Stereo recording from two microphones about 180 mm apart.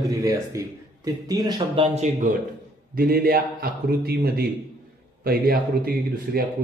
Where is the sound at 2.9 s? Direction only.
55° right (ahead or behind).